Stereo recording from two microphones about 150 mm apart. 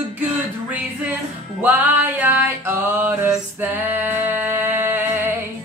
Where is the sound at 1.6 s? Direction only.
10° right (ahead or behind).